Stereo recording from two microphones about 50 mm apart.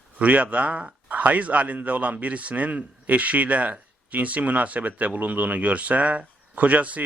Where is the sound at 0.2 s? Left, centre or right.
Right.